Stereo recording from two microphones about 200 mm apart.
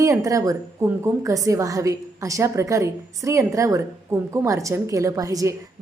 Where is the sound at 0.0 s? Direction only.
15° right (ahead or behind).